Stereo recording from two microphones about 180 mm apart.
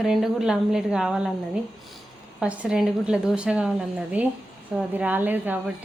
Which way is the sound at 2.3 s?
5° right (ahead or behind).